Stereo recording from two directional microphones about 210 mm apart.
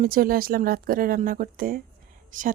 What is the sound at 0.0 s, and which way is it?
Speech, 45° right (ahead or behind).